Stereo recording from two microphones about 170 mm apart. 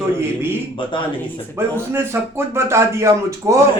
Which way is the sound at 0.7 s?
30° left (ahead or behind).